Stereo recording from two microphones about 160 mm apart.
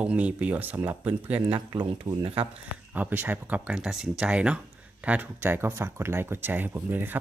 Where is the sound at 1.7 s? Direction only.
25° right (ahead or behind).